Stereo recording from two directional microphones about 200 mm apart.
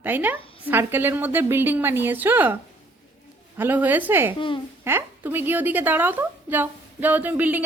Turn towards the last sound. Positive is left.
turn(degrees=-10)  # may be behind; listen again after turning